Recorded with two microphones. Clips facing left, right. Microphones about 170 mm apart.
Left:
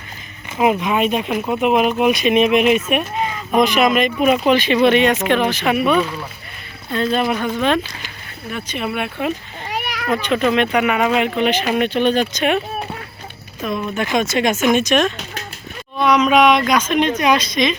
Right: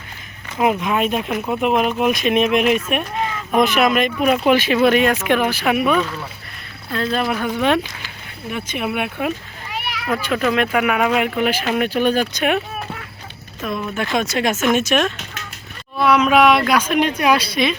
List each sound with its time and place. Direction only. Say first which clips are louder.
0.5 s speech: left 2 dB; 5° left (ahead or behind)
6.0 s speech: left 2 dB; 10° left (ahead or behind)
7.5 s speech: even; 15° right (ahead or behind)
9.6 s a sound: left 3 dB; 45° left (ahead or behind)
10.1 s speech: left 2 dB; 5° right (ahead or behind)
13.6 s speech: left 2 dB; centre (ahead or behind)